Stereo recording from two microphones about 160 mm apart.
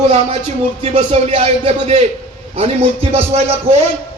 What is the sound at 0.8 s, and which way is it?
A man's voice, 40° right (ahead or behind).